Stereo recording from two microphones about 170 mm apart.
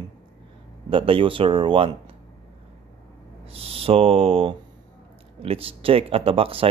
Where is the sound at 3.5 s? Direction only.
35° right (ahead or behind).